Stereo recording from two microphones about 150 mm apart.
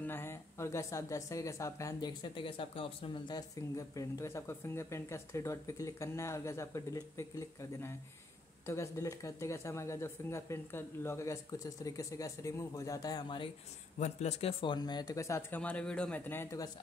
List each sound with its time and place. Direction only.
0.0 s speech: 15° left (ahead or behind)
13.9 s speech: 50° left (ahead or behind)
14.6 s speech: 30° left (ahead or behind)